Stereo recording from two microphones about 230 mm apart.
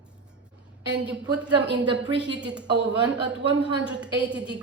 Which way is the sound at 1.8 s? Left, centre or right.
Right.